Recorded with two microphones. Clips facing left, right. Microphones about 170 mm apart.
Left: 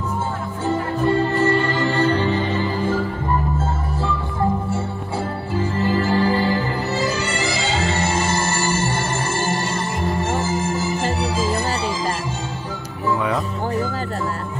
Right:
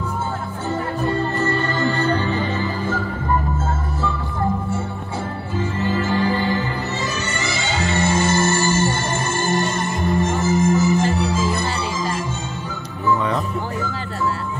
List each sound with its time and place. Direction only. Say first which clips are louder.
0.7 s music: left 3 dB; 30° left (ahead or behind)
5.6 s music: left 2 dB; 35° left (ahead or behind)